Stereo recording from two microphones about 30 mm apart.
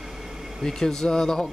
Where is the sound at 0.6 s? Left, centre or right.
Centre.